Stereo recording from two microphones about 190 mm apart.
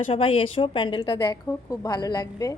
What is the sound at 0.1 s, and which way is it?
A woman's voice, 30° left (ahead or behind).